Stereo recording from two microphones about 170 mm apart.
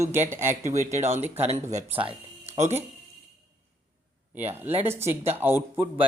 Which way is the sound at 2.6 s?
40° right (ahead or behind).